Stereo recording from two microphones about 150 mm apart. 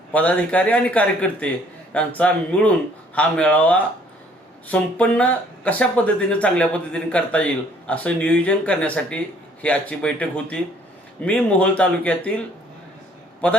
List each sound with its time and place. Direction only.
0.1 s a man's voice: 10° left (ahead or behind)
13.4 s a man's voice: 10° left (ahead or behind)